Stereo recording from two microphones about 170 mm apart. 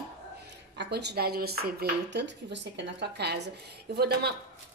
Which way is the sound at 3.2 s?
75° right (ahead or behind).